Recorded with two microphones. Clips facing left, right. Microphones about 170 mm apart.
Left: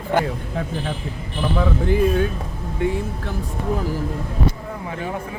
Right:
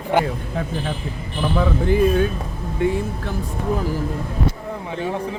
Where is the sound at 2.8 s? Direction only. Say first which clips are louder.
Right 2 dB; 35° right (ahead or behind).